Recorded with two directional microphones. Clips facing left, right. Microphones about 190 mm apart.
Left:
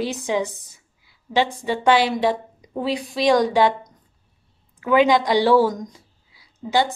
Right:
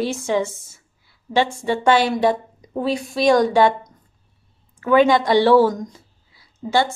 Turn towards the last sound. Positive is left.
turn(degrees=15)  # may be behind; listen again after turning